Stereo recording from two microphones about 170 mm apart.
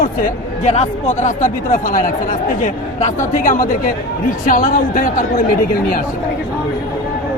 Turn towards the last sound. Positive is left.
turn(degrees=55)  # may be behind; listen again after turning